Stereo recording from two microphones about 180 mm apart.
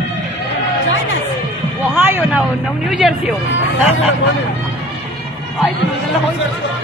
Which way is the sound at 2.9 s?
Centre (ahead or behind).